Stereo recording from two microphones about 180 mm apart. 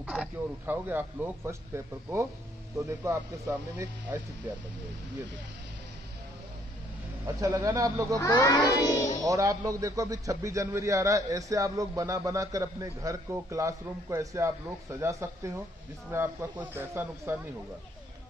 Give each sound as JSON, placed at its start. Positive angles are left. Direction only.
{"t": 0.0, "sound": "speech", "side_deg": -10}
{"t": 2.7, "sound": "a man's voice", "side_deg": -15}
{"t": 7.2, "sound": "a man's voice", "side_deg": -15}
{"t": 8.2, "sound": "speech", "side_deg": 20}
{"t": 9.2, "sound": "a man's voice", "side_deg": -20}